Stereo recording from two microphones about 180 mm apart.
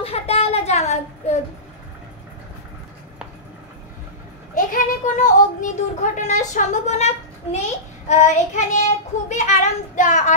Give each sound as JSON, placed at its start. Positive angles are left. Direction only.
{"t": 0.0, "sound": "a sound", "side_deg": 35}
{"t": 4.6, "sound": "speech", "side_deg": 45}
{"t": 8.1, "sound": "child singing", "side_deg": 40}